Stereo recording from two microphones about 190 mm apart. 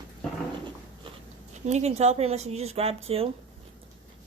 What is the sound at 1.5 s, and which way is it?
A woman's voice, 35° right (ahead or behind).